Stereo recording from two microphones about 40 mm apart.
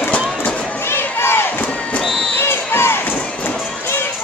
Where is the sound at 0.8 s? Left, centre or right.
Left.